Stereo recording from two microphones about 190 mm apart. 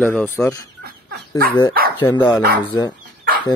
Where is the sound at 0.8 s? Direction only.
55° right (ahead or behind).